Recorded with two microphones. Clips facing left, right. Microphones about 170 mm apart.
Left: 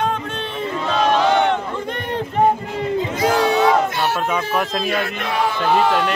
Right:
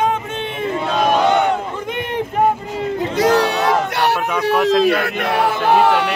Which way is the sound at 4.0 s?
70° right (ahead or behind).